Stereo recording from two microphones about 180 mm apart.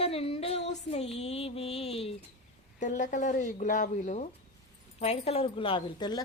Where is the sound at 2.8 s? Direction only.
45° left (ahead or behind).